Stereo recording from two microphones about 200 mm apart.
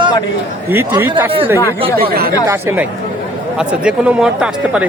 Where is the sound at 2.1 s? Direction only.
50° right (ahead or behind).